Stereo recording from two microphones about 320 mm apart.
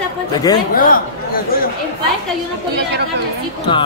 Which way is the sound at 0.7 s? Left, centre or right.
Left.